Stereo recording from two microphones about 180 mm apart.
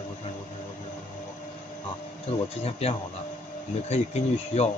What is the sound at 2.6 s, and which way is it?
Speech, 35° left (ahead or behind).